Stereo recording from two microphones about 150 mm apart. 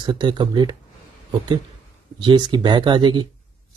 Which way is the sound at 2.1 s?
30° right (ahead or behind).